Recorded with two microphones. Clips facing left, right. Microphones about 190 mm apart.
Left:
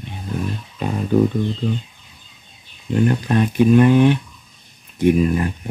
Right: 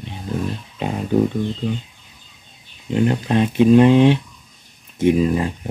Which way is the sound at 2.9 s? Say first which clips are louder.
Even; 20° right (ahead or behind).